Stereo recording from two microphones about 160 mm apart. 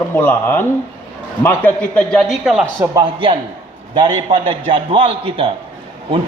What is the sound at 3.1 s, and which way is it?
Speech, 35° right (ahead or behind).